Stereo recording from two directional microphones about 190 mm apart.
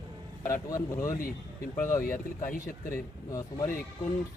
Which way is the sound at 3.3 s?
15° left (ahead or behind).